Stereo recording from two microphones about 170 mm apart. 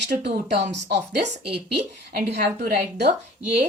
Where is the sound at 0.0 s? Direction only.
85° right.